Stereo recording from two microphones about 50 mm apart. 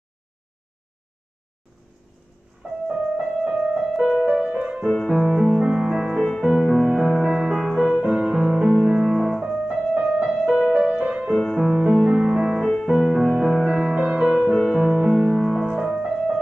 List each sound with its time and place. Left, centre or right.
2.6 s music: centre
4.8 s music: centre
6.2 s music: centre
8.3 s music: centre
9.9 s music: right
10.5 s music: centre
11.0 s music: centre
11.2 s music: centre
11.8 s music: right
12.6 s music: centre
15.6 s music: centre